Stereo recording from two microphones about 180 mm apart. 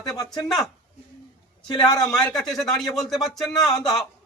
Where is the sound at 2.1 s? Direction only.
5° left (ahead or behind).